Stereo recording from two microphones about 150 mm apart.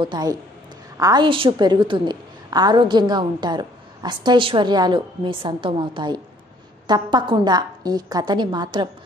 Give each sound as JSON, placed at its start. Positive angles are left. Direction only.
{"t": 0.0, "sound": "a woman's voice", "side_deg": -30}
{"t": 1.2, "sound": "a woman's voice", "side_deg": -35}